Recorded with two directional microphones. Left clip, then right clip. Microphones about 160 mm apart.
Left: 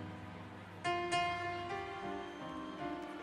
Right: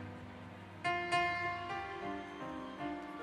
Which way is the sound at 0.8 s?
20° right (ahead or behind).